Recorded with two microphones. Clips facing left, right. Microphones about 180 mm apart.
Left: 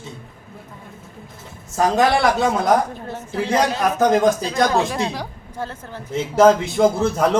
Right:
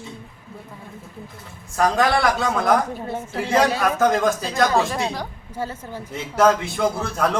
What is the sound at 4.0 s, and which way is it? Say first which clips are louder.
Speech: left 4 dB; 20° left (ahead or behind).